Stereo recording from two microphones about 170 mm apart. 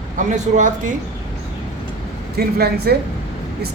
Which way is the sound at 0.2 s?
45° right (ahead or behind).